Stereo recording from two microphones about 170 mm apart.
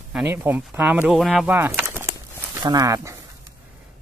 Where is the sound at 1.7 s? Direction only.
10° right (ahead or behind).